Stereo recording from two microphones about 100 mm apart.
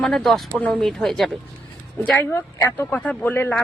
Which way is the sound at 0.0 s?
5° left (ahead or behind).